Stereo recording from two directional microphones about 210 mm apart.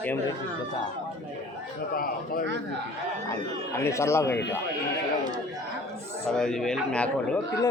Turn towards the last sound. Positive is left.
turn(degrees=5)  # may be behind; listen again after turning